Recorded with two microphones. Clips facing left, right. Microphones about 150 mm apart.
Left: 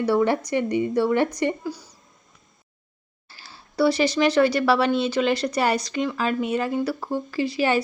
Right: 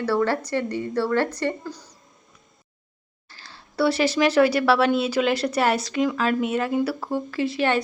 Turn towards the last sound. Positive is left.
turn(degrees=0)  # may be behind; listen again after turning